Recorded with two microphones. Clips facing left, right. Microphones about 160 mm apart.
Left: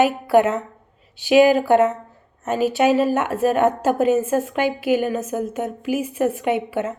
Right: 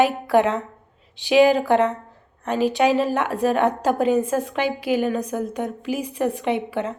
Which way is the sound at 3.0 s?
45° left (ahead or behind).